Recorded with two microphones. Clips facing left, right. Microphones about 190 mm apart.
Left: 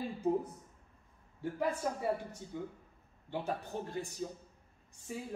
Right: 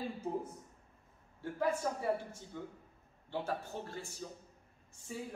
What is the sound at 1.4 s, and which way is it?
A man's voice, 15° left (ahead or behind).